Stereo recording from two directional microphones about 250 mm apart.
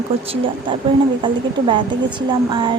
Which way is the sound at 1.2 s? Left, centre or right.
Centre.